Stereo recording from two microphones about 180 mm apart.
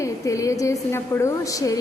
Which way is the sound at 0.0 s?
15° left (ahead or behind).